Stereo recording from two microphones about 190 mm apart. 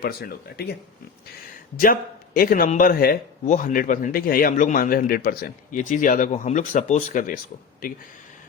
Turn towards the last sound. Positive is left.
turn(degrees=45)  # may be behind; listen again after turning